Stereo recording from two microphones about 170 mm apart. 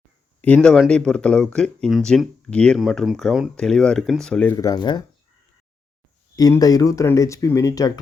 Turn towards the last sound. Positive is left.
turn(degrees=20)  # may be behind; listen again after turning